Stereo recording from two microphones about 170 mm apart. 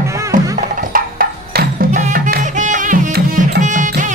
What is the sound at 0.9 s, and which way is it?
Music, 55° right (ahead or behind).